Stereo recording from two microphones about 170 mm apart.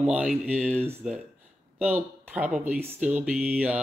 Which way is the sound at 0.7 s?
15° right (ahead or behind).